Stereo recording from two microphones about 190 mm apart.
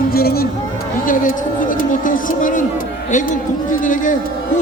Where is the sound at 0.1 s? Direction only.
50° left (ahead or behind).